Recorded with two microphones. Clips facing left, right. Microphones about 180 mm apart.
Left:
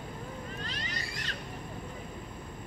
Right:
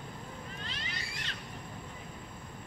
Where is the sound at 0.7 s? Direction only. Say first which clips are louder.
Left 3 dB; 40° left (ahead or behind).